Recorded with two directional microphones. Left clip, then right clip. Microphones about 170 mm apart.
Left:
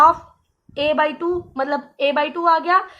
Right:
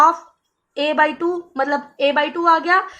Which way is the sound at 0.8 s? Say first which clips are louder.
Right 1 dB; 50° right (ahead or behind).